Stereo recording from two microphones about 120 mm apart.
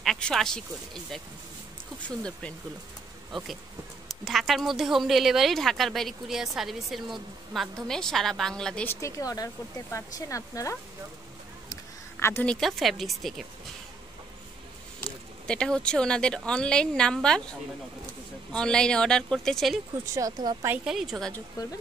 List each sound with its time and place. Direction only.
0.0 s speech: 5° left (ahead or behind)
2.0 s a woman's voice: 10° left (ahead or behind)
3.3 s speech: 5° right (ahead or behind)
8.8 s speech: 25° left (ahead or behind)
11.7 s a sound: 20° left (ahead or behind)
12.4 s speech: centre (ahead or behind)
15.4 s a woman's voice: 5° left (ahead or behind)
20.2 s speech: 30° right (ahead or behind)
20.8 s speech: centre (ahead or behind)
21.6 s speech: 30° left (ahead or behind)